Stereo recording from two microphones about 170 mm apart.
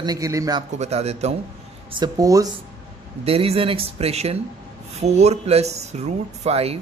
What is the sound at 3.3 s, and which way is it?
Speech, 35° right (ahead or behind).